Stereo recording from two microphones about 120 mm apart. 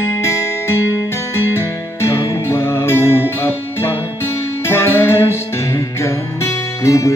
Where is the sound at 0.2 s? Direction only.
25° left (ahead or behind).